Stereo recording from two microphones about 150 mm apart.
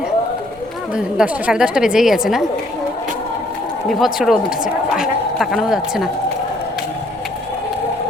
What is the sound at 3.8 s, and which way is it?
A woman's voice, centre (ahead or behind).